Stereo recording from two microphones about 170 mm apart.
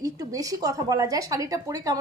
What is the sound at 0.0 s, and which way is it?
A woman's voice, 20° right (ahead or behind).